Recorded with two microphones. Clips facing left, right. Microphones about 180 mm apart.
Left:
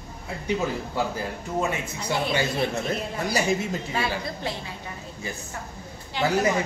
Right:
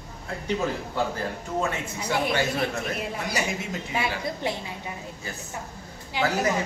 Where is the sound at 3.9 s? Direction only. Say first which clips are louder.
Even; 15° right (ahead or behind).